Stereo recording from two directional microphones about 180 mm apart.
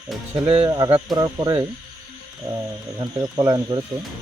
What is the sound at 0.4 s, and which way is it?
Speech, 30° right (ahead or behind).